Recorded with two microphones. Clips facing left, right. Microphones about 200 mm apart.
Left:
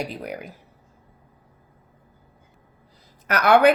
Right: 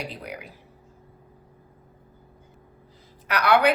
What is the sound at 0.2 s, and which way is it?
Speech, 45° left (ahead or behind).